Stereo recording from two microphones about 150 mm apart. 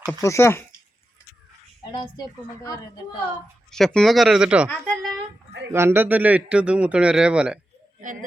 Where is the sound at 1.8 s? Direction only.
30° left (ahead or behind).